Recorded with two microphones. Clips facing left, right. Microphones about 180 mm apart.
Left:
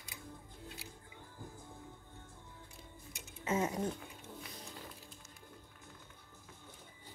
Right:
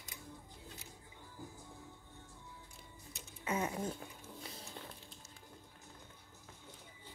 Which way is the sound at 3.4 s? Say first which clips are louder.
Left 3 dB; 25° left (ahead or behind).